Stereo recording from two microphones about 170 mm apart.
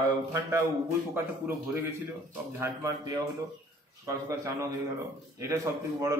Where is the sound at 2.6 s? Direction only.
15° right (ahead or behind).